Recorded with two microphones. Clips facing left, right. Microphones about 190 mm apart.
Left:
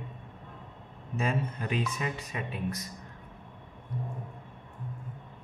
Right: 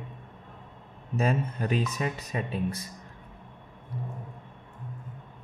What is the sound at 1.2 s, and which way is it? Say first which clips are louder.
Speech: right 4 dB; 40° right (ahead or behind).